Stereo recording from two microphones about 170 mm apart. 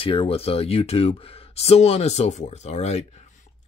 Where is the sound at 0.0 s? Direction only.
35° left (ahead or behind).